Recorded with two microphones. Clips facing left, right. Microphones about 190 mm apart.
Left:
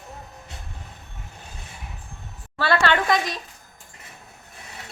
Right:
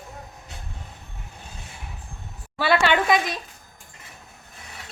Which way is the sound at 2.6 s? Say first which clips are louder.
Right 1 dB; 10° right (ahead or behind).